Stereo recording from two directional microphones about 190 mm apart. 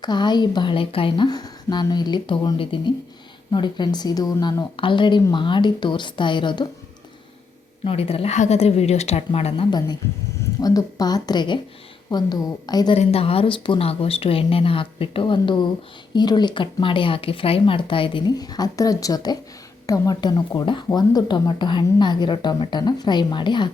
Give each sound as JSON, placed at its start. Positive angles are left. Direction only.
{"t": 0.0, "sound": "speech", "side_deg": 20}
{"t": 7.9, "sound": "speech", "side_deg": 30}
{"t": 13.0, "sound": "speech", "side_deg": 30}